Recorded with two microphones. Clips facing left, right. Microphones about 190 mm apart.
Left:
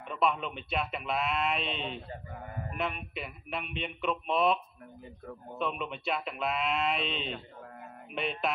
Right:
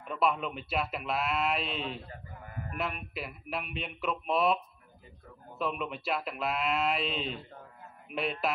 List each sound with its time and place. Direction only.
0.1 s speech: 5° right (ahead or behind)
5.6 s speech: centre (ahead or behind)